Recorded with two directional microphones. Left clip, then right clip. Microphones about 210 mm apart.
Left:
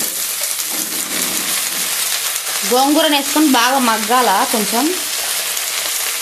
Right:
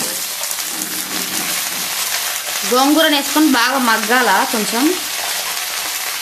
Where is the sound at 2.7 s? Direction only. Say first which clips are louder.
Even; 10° left (ahead or behind).